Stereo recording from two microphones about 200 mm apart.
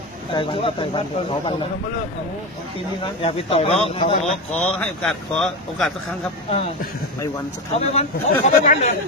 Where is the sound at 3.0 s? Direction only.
25° left (ahead or behind).